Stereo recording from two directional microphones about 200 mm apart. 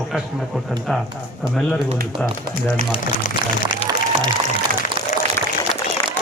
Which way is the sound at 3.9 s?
20° right (ahead or behind).